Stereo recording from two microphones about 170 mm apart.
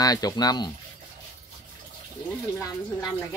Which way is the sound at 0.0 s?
20° left (ahead or behind).